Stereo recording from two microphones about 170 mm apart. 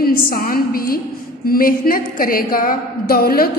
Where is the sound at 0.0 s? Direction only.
60° left (ahead or behind).